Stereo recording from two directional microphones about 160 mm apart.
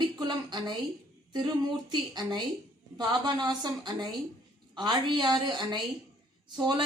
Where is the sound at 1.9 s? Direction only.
25° right (ahead or behind).